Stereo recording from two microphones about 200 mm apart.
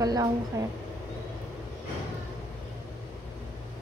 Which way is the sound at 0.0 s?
20° right (ahead or behind).